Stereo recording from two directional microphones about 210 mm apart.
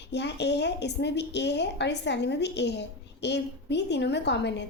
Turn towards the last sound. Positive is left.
turn(degrees=55)  # may be behind; listen again after turning